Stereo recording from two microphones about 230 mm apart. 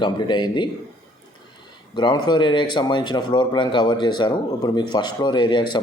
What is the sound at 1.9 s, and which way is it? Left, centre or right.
A man's voice, centre.